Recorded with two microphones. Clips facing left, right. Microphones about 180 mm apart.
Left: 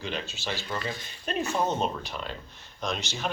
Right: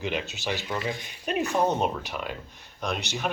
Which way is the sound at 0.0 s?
15° right (ahead or behind).